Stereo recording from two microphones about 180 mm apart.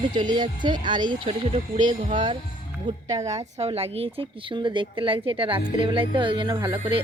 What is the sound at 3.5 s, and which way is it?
A woman's voice, 35° right (ahead or behind).